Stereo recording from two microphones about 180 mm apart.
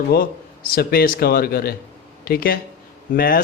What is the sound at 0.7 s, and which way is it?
A man's voice, 55° left (ahead or behind).